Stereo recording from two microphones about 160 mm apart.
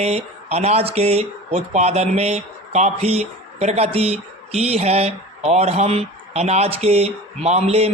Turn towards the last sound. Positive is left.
turn(degrees=-40)  # may be behind; listen again after turning